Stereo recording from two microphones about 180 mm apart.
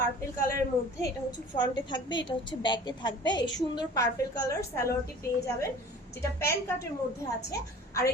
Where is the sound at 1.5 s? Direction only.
25° left (ahead or behind).